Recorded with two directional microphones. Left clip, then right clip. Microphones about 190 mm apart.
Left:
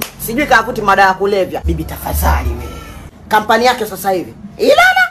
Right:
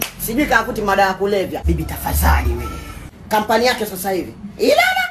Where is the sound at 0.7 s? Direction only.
30° left (ahead or behind).